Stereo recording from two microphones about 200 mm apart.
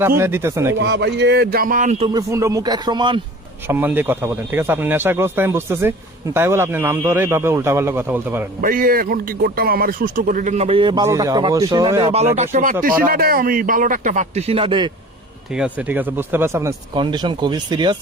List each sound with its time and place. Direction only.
0.2 s a man's voice: 10° right (ahead or behind)
0.8 s speech: 55° right (ahead or behind); by 2.0 s 35° right (ahead or behind)
2.1 s speech: 15° right (ahead or behind)
3.7 s a man's voice: 10° right (ahead or behind)
8.6 s speech: 45° right (ahead or behind)
13.1 s speech: 45° right (ahead or behind); by 14.8 s 25° right (ahead or behind)
15.5 s a man's voice: 5° right (ahead or behind)